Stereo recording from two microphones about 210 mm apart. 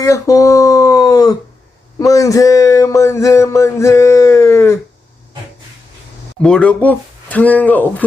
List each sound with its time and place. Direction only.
0.0 s speech: 15° left (ahead or behind)
2.0 s a sound: 15° left (ahead or behind)
6.4 s speech: 5° left (ahead or behind)